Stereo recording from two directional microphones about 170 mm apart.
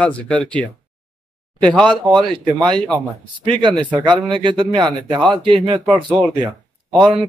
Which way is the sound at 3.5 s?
30° right (ahead or behind).